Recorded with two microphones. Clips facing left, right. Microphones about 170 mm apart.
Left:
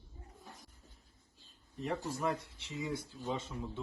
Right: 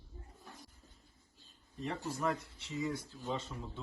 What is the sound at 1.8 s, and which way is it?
A man's voice, 15° left (ahead or behind).